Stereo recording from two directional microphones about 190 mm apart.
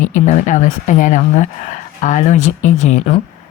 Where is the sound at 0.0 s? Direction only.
40° left (ahead or behind).